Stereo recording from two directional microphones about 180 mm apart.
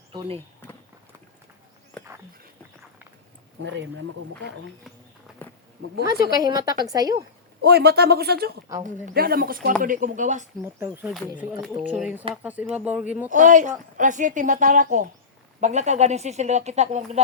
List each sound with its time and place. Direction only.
0.1 s speech: 25° right (ahead or behind)
0.3 s a sound: 10° left (ahead or behind)
1.9 s a sound: 5° left (ahead or behind)
3.6 s speech: 90° right
5.4 s a sound: 10° left (ahead or behind)
6.3 s a woman's voice: 20° right (ahead or behind)
7.6 s a man's voice: 60° right (ahead or behind)
8.8 s a woman's voice: 45° right (ahead or behind)
10.9 s speech: 5° right (ahead or behind)
13.3 s a woman's voice: 45° right (ahead or behind)